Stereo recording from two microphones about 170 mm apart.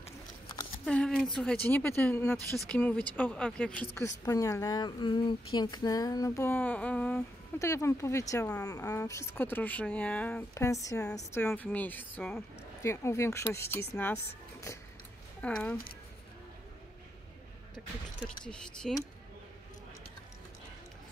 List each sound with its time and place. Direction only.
0.8 s speech: 5° left (ahead or behind)
3.9 s speech: 20° left (ahead or behind)
10.5 s speech: 20° left (ahead or behind)
15.4 s speech: 5° left (ahead or behind)
17.7 s speech: 5° left (ahead or behind)